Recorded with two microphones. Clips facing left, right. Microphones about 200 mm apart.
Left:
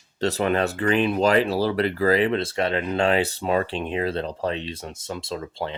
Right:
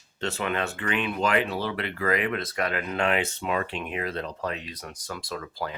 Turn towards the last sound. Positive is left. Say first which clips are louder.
# left 4 dB
turn(degrees=25)  # may be behind; listen again after turning